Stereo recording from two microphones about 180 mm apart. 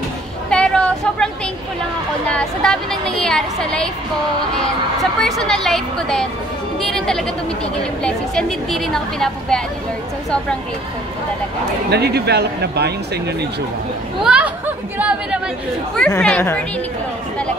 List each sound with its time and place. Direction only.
0.5 s a sound: 5° left (ahead or behind)
2.2 s a woman's voice: 5° left (ahead or behind)
5.2 s a woman's voice: centre (ahead or behind)
11.9 s speech: 65° right (ahead or behind)
14.2 s speech: 5° right (ahead or behind)
16.2 s speech: 5° left (ahead or behind)